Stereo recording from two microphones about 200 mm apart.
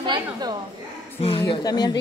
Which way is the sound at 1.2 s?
25° left (ahead or behind).